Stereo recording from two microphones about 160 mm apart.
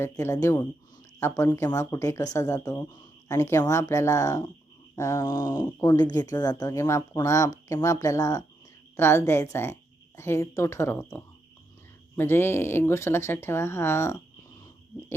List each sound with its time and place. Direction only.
0.0 s speech: 15° left (ahead or behind)
5.3 s speech: 30° left (ahead or behind)
5.5 s speech: 15° left (ahead or behind)